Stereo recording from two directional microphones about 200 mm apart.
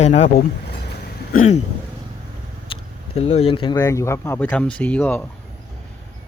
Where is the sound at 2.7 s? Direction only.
30° left (ahead or behind); by 5.2 s 10° left (ahead or behind).